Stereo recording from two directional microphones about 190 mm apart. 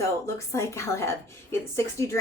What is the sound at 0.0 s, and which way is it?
A woman's voice, 15° left (ahead or behind).